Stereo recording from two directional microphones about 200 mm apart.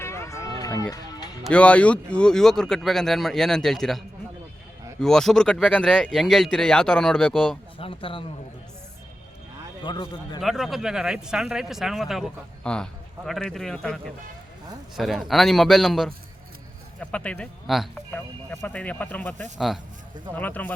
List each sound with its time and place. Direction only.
0.0 s run: 15° left (ahead or behind)
0.6 s music: 15° left (ahead or behind)
1.5 s speech: 5° left (ahead or behind)
7.8 s a man's voice: 25° left (ahead or behind)
9.8 s a man's voice: 20° left (ahead or behind)
10.4 s speech: centre (ahead or behind)